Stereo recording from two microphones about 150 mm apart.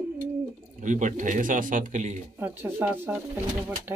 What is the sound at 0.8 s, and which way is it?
Speech, 55° right (ahead or behind).